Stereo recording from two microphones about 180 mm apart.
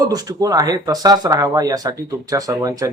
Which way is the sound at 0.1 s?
20° right (ahead or behind).